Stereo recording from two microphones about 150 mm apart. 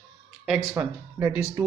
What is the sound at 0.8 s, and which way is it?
Speech, 20° right (ahead or behind).